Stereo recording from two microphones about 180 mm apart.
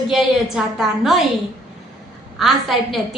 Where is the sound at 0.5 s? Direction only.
Centre (ahead or behind).